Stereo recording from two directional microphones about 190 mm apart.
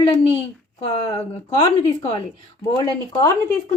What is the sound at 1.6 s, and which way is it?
Speech, 30° left (ahead or behind).